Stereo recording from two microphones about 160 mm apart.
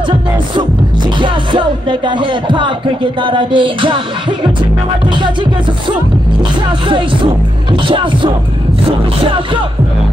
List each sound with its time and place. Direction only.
1.2 s music: 30° right (ahead or behind)
5.1 s speech: 30° right (ahead or behind)
6.9 s music: 30° right (ahead or behind)